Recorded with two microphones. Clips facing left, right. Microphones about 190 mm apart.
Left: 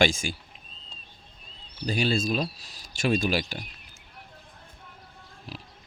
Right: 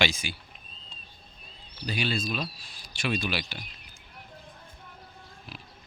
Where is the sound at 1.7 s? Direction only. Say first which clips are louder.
Left 5 dB; 45° left (ahead or behind).